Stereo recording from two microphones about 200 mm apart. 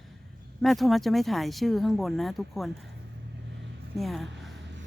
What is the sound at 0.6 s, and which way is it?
Speech, centre (ahead or behind).